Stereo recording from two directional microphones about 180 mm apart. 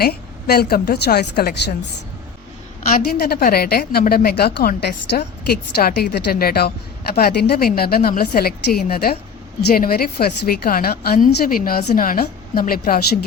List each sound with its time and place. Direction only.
0.0 s a woman's voice: 60° left (ahead or behind)
2.9 s a woman's voice: 55° left (ahead or behind)